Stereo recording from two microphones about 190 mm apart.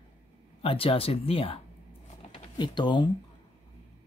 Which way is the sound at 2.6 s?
25° left (ahead or behind).